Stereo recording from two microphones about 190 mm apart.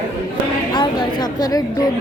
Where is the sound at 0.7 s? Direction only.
20° left (ahead or behind).